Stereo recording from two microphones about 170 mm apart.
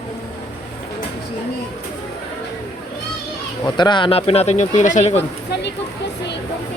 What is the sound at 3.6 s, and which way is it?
Speech, 25° left (ahead or behind).